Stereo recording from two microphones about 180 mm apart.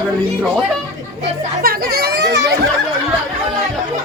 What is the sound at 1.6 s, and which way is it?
Speech, 55° right (ahead or behind).